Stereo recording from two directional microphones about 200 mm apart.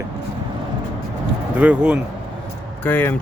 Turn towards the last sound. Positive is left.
turn(degrees=10)  # may be behind; listen again after turning